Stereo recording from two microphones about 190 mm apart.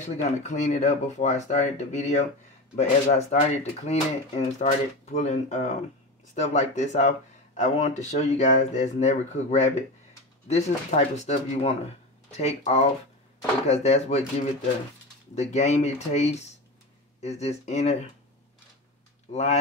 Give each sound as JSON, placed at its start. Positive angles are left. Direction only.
{"t": 0.0, "sound": "speech", "side_deg": 40}
{"t": 19.3, "sound": "speech", "side_deg": 35}